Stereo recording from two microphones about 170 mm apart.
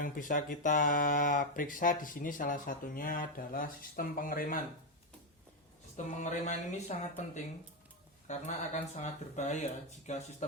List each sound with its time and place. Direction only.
0.0 s speech: 50° left (ahead or behind)
6.1 s speech: 45° left (ahead or behind)
8.3 s speech: 45° left (ahead or behind)